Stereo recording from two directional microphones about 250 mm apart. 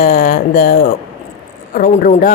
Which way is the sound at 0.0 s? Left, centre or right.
Left.